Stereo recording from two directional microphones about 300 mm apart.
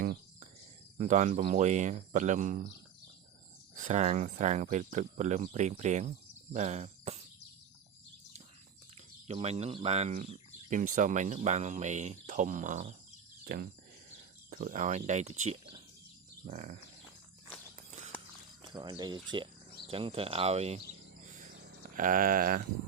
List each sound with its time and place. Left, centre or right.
0.0 s cricket: right
0.9 s speech: right
3.8 s speech: right
9.2 s speech: right
18.6 s speech: centre
21.2 s a sound: right